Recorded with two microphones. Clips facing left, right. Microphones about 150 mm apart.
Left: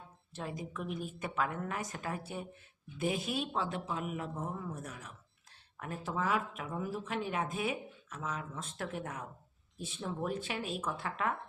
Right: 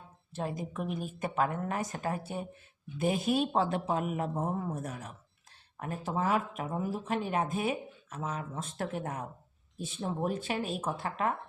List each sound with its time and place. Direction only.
0.3 s speech: 45° right (ahead or behind)